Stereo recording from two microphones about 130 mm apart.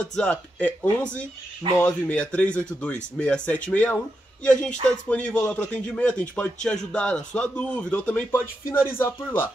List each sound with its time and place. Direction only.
0.0 s speech: 10° left (ahead or behind)